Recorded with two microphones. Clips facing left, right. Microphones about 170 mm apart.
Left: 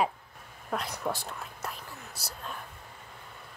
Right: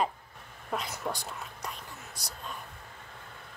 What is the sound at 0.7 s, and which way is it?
Whispering, centre (ahead or behind).